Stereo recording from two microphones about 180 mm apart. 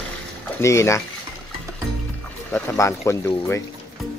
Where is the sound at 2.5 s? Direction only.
10° left (ahead or behind).